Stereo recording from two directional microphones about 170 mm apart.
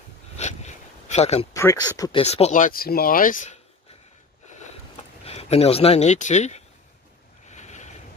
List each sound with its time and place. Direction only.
0.4 s a sound: 45° left (ahead or behind)
1.5 s speech: 20° left (ahead or behind)
2.2 s speech: 40° left (ahead or behind)
5.2 s speech: 35° left (ahead or behind)
7.4 s boat: 45° left (ahead or behind)